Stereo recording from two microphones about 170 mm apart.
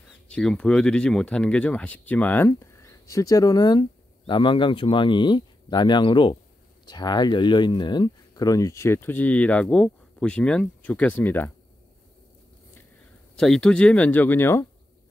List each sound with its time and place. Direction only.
0.3 s speech: 5° left (ahead or behind)
13.4 s speech: 5° left (ahead or behind)